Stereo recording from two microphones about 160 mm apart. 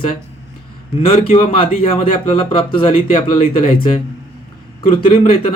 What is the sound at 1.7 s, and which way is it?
Speech, 60° left (ahead or behind).